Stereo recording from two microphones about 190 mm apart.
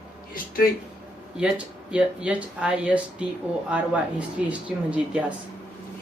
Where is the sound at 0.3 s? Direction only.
50° left (ahead or behind).